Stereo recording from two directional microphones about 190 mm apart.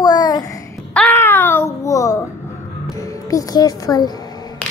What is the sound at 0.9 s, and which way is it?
Babbling, 10° left (ahead or behind).